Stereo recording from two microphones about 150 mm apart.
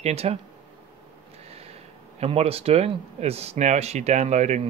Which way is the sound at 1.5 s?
40° right (ahead or behind).